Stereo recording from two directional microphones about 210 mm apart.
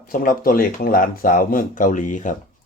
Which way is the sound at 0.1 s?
40° left (ahead or behind).